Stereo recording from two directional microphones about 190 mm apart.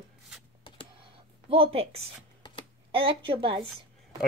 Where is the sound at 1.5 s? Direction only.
30° right (ahead or behind).